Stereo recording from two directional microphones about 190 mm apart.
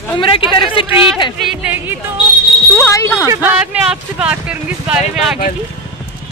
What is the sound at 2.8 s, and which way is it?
Speech, 15° left (ahead or behind).